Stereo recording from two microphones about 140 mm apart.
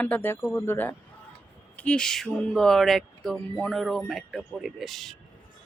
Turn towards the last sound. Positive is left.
turn(degrees=0)  # may be behind; listen again after turning